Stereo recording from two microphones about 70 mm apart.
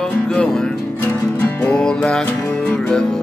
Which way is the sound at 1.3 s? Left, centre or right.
Left.